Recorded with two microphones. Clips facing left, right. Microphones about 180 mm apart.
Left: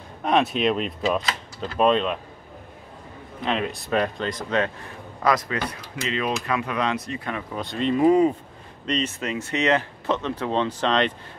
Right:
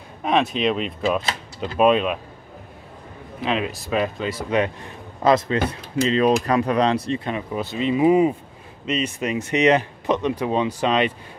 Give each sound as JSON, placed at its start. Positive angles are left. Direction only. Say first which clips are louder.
{"t": 0.2, "sound": "a man's voice", "louder": "right 1 dB", "side_deg": 0}
{"t": 1.6, "sound": "speech", "louder": "right 3 dB", "side_deg": -15}
{"t": 3.3, "sound": "a man's voice", "louder": "right 2 dB", "side_deg": -5}
{"t": 5.2, "sound": "speech", "louder": "right 5 dB", "side_deg": -25}
{"t": 7.5, "sound": "speech", "louder": "right 1 dB", "side_deg": -5}